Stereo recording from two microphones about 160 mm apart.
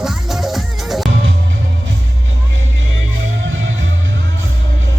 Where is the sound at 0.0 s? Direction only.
Centre (ahead or behind).